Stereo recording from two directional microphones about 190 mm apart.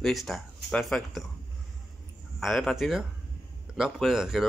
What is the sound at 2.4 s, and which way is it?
Speech, centre (ahead or behind).